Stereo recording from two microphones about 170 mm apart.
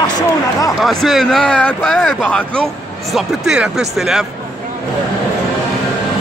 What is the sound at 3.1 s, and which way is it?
Speech, 5° right (ahead or behind).